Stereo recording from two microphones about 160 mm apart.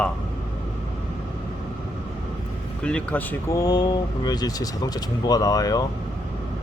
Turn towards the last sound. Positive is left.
turn(degrees=25)  # may be behind; listen again after turning